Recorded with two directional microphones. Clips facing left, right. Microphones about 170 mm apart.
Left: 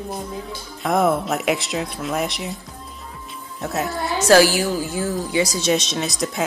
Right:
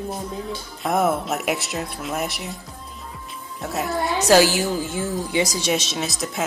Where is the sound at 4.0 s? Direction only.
20° right (ahead or behind).